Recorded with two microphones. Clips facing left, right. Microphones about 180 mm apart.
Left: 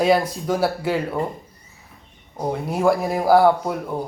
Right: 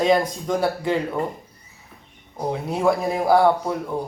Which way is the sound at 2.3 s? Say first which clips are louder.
Left 1 dB; centre (ahead or behind).